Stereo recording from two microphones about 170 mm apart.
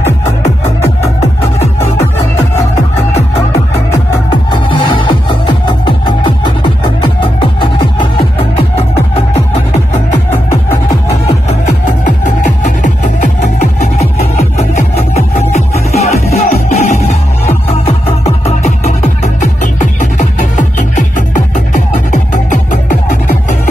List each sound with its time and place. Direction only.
4.5 s music: 30° left (ahead or behind)
12.6 s music: 45° left (ahead or behind)
15.1 s music: 40° left (ahead or behind)